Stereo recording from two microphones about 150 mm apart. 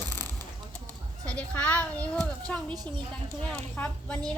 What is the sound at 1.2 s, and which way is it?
Speech, 5° left (ahead or behind).